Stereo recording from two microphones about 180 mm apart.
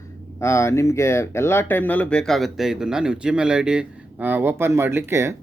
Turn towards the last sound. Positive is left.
turn(degrees=-15)  # may be behind; listen again after turning